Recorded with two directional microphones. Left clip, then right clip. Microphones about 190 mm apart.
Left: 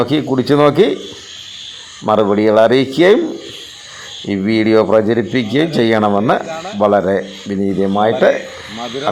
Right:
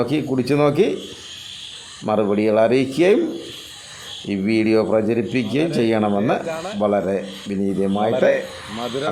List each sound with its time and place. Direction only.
0.0 s speech: 15° left (ahead or behind)
2.0 s speech: 10° left (ahead or behind)
4.3 s speech: 10° left (ahead or behind)
6.5 s speech: 15° right (ahead or behind)
6.7 s speech: 15° left (ahead or behind)